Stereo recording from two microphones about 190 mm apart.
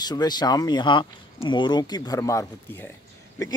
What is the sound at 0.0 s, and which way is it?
Speech, 20° left (ahead or behind).